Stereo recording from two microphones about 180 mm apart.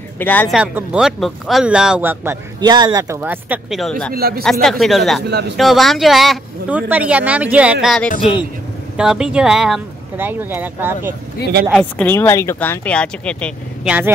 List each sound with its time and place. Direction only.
0.2 s speech: 10° left (ahead or behind)
0.5 s speech: 5° right (ahead or behind)
2.6 s speech: 25° right (ahead or behind)
4.1 s speech: 55° right (ahead or behind)
4.4 s speech: centre (ahead or behind)
11.7 s speech: 5° left (ahead or behind)
13.8 s speech: 10° right (ahead or behind)